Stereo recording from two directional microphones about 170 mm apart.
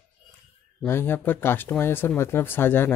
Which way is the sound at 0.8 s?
15° left (ahead or behind).